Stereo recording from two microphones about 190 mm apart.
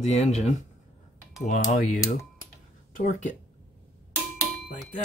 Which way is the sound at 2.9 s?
40° left (ahead or behind).